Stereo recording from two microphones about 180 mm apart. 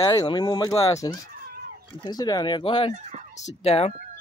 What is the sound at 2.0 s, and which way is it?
Speech, 20° left (ahead or behind).